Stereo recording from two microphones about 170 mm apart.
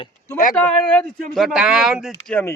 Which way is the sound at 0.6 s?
10° left (ahead or behind).